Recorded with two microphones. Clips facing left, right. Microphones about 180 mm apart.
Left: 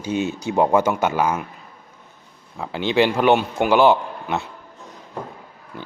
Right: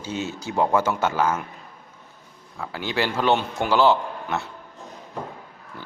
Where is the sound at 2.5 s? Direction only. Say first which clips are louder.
Left 7 dB; 20° left (ahead or behind).